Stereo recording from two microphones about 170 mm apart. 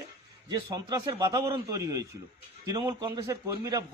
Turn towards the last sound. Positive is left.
turn(degrees=-20)  # may be behind; listen again after turning